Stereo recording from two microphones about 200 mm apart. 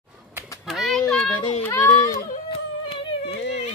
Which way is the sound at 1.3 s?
25° left (ahead or behind).